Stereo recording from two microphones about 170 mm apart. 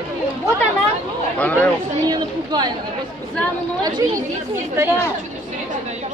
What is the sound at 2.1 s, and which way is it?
Speech, 25° right (ahead or behind).